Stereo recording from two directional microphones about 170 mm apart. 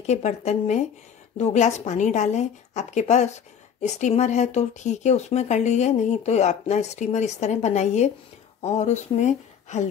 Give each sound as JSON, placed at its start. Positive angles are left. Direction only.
{"t": 0.0, "sound": "speech", "side_deg": 40}